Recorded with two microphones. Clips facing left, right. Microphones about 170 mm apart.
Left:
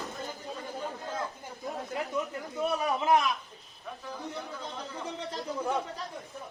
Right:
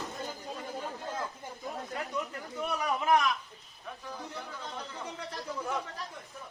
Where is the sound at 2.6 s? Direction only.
20° left (ahead or behind).